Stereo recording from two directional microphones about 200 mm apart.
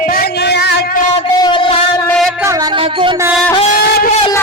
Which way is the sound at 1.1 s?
25° left (ahead or behind).